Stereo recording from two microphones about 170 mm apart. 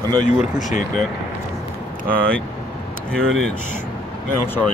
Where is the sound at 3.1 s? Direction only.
5° left (ahead or behind).